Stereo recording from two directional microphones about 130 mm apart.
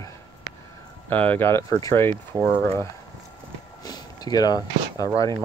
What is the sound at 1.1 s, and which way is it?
Speech, 15° left (ahead or behind).